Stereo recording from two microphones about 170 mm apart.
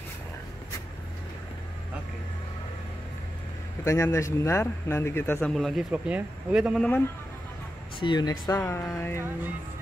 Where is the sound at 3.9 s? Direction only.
15° left (ahead or behind).